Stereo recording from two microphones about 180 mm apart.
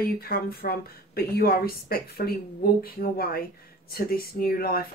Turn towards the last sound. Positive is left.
turn(degrees=55)  # may be behind; listen again after turning